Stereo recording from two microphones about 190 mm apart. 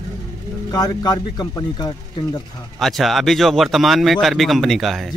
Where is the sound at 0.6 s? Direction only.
20° left (ahead or behind).